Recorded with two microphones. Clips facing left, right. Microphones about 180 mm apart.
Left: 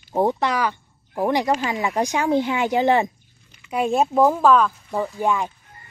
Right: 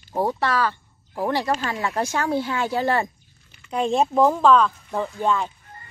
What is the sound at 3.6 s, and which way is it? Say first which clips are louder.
A woman's voice: left 1 dB; 10° left (ahead or behind).